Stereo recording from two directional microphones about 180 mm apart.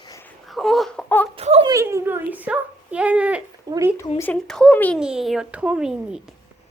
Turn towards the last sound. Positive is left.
turn(degrees=-5)  # may be behind; listen again after turning